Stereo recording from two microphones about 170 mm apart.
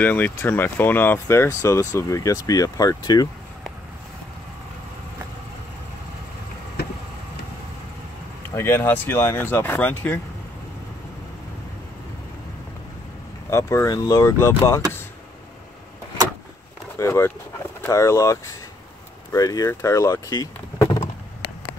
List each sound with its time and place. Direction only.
0.0 s speech: 10° left (ahead or behind)
8.5 s speech: 15° left (ahead or behind)
13.5 s speech: 15° left (ahead or behind)
17.0 s a sound: 15° left (ahead or behind)
17.8 s speech: 15° left (ahead or behind)